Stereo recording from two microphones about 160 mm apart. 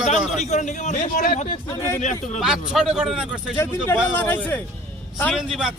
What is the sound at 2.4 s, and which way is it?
A man's voice, 5° right (ahead or behind).